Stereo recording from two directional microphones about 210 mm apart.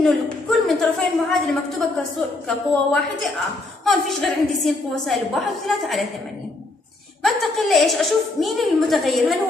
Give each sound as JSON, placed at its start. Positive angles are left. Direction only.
{"t": 0.0, "sound": "a woman's voice", "side_deg": 0}
{"t": 7.2, "sound": "a woman's voice", "side_deg": 0}